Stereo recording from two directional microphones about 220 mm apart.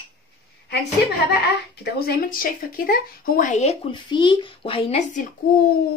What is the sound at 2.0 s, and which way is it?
Speech, 40° left (ahead or behind).